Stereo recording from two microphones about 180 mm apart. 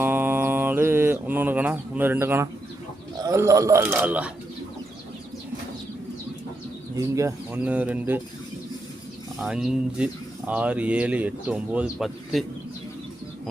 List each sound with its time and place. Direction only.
0.0 s mantra: 10° right (ahead or behind)
3.2 s speech: 15° right (ahead or behind)
6.9 s speech: 15° right (ahead or behind)
9.4 s speech: 5° right (ahead or behind)